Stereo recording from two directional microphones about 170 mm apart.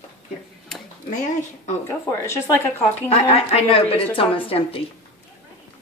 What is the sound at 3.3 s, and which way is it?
A woman's voice, 35° left (ahead or behind).